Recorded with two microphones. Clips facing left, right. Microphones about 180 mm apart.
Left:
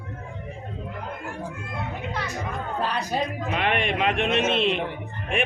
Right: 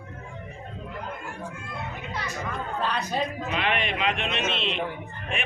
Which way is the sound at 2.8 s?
10° left (ahead or behind).